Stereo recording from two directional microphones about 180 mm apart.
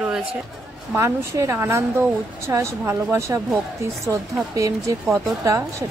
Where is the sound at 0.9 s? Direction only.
15° right (ahead or behind).